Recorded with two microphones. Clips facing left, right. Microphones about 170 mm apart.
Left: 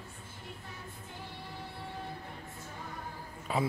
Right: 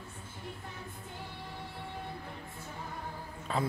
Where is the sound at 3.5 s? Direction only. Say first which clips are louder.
Left 1 dB; 5° left (ahead or behind).